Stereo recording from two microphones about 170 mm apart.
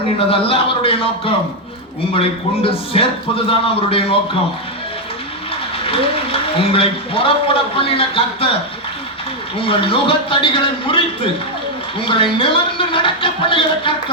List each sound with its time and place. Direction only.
0.3 s a man's voice: 35° left (ahead or behind)
5.8 s a man's voice: 35° left (ahead or behind)
9.6 s a man's voice: 30° left (ahead or behind)